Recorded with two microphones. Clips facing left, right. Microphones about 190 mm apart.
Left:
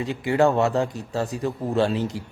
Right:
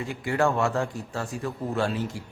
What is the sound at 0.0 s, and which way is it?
Speech, 20° left (ahead or behind).